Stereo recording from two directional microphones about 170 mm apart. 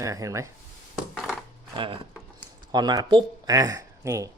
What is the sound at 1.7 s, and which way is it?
Speech, 30° right (ahead or behind).